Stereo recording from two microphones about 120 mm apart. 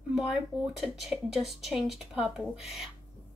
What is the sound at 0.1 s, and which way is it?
Speech, centre (ahead or behind).